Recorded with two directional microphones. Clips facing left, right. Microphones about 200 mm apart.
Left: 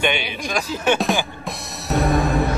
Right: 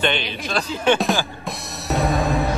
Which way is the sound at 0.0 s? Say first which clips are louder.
Even; 10° left (ahead or behind).